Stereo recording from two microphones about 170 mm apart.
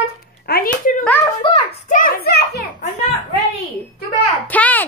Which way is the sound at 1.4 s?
30° left (ahead or behind).